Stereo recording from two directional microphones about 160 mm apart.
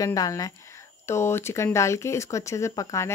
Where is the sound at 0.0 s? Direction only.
20° left (ahead or behind).